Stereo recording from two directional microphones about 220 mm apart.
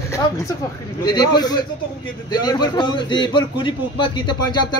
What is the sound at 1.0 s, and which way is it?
A man's voice, 20° left (ahead or behind).